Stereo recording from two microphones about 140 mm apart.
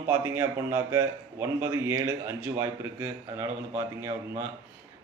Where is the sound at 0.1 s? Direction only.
20° right (ahead or behind).